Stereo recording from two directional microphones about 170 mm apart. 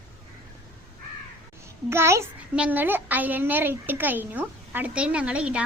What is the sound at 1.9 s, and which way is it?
A child's voice, 15° right (ahead or behind).